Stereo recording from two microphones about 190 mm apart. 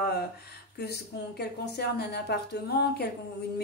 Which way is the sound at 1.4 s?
60° left (ahead or behind).